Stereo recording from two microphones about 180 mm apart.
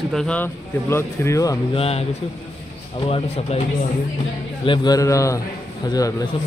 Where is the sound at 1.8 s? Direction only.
35° left (ahead or behind).